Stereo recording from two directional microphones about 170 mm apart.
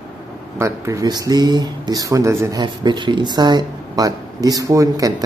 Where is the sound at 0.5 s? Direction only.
15° right (ahead or behind).